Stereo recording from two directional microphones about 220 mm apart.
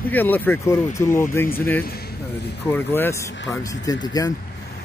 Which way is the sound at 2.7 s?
10° left (ahead or behind).